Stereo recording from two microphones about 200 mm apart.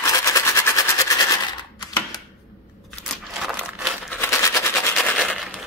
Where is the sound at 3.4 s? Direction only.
Centre (ahead or behind).